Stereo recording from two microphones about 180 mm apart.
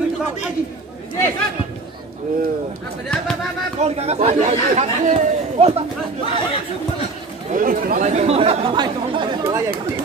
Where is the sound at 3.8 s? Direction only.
35° right (ahead or behind).